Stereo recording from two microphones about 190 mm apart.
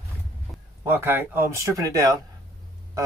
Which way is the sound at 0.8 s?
10° right (ahead or behind).